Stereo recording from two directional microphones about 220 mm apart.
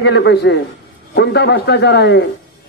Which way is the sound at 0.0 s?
50° left (ahead or behind).